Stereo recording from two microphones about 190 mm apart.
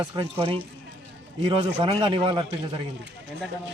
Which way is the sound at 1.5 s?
30° right (ahead or behind).